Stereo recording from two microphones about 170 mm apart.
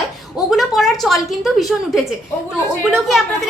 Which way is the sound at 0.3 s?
Centre (ahead or behind).